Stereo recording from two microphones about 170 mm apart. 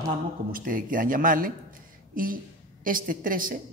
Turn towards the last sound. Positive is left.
turn(degrees=-55)  # may be behind; listen again after turning